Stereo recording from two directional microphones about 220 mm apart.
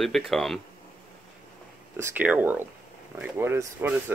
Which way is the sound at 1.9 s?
10° right (ahead or behind).